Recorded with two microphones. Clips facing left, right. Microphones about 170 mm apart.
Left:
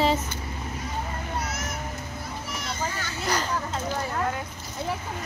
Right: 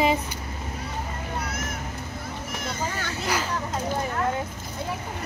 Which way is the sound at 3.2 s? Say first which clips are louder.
Left 1 dB; 5° right (ahead or behind).